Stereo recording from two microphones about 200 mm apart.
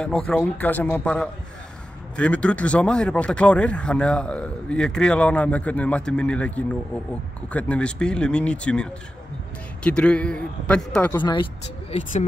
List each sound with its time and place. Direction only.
0.0 s a man's voice: 5° left (ahead or behind)
9.8 s speech: 5° left (ahead or behind)
11.9 s speech: 35° left (ahead or behind)